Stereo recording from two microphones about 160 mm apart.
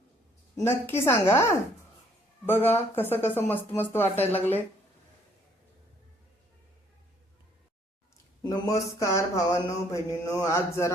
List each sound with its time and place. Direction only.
0.5 s a woman's voice: 15° left (ahead or behind)
2.9 s a woman's voice: 15° left (ahead or behind)
8.4 s speech: 25° left (ahead or behind)